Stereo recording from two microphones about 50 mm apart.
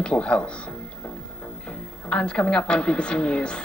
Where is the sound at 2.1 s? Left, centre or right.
Centre.